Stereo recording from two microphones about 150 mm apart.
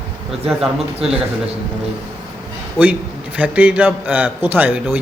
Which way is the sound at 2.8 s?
10° right (ahead or behind).